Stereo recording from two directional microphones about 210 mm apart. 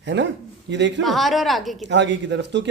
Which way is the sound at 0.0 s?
60° right (ahead or behind).